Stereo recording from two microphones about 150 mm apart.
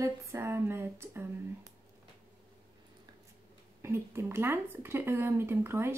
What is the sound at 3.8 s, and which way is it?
Speech, 15° right (ahead or behind).